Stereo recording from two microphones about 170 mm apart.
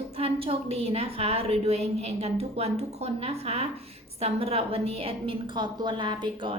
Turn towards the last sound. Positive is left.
turn(degrees=-25)  # may be behind; listen again after turning